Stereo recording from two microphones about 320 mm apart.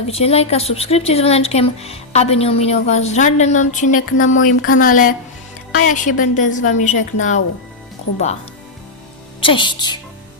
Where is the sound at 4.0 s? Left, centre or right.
Left.